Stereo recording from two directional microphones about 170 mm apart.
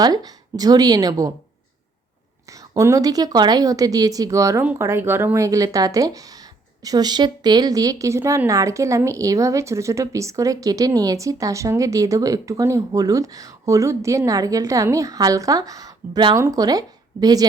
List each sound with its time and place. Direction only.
0.0 s speech: 25° right (ahead or behind)
2.5 s speech: 20° right (ahead or behind)